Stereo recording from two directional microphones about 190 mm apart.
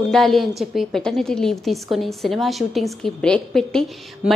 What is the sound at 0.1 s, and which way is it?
A woman's voice, centre (ahead or behind).